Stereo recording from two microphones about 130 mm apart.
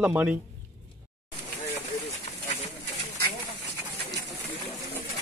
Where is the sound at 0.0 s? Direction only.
15° right (ahead or behind).